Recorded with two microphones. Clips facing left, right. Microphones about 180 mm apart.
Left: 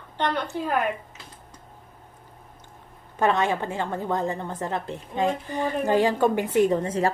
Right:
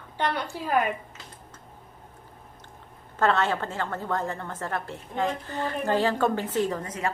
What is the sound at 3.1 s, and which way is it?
A woman's voice, 15° left (ahead or behind).